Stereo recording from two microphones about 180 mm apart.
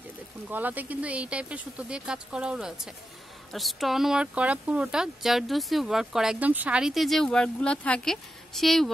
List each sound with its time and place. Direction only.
0.5 s speech: 10° right (ahead or behind)